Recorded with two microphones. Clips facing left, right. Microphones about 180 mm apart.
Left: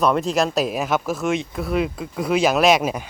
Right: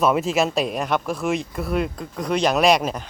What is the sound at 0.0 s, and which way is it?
Speech, centre (ahead or behind).